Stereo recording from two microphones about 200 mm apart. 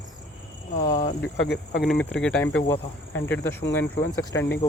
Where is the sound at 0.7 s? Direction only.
40° left (ahead or behind).